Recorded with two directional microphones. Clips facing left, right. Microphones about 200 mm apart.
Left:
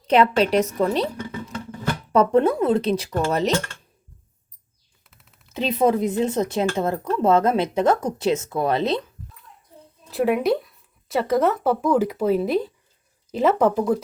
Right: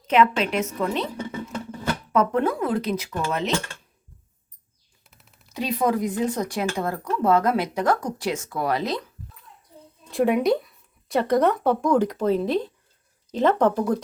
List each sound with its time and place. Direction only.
0.1 s a woman's voice: 35° left (ahead or behind)
2.1 s speech: 25° left (ahead or behind)
5.5 s speech: 25° left (ahead or behind)
10.1 s speech: 5° left (ahead or behind)